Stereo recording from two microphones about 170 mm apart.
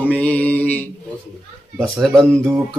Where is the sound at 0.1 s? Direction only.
10° left (ahead or behind).